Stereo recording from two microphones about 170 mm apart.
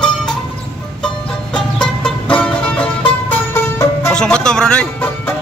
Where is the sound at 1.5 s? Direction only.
5° left (ahead or behind).